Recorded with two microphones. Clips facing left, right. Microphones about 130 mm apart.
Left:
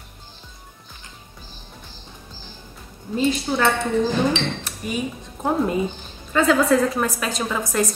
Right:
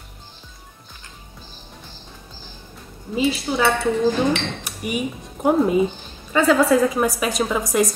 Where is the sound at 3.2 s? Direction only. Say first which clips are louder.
Even; 5° right (ahead or behind).